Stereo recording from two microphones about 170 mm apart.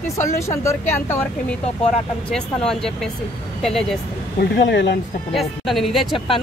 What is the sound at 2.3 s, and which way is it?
Speech, 5° left (ahead or behind).